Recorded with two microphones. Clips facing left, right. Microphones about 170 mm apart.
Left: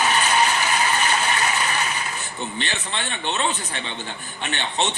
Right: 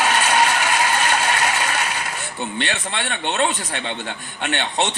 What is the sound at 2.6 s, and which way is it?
Speech, 70° right (ahead or behind).